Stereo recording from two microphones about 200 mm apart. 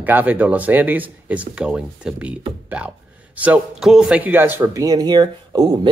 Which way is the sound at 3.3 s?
5° right (ahead or behind).